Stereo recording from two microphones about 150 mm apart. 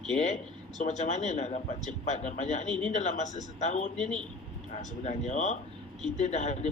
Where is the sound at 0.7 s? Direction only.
50° left (ahead or behind).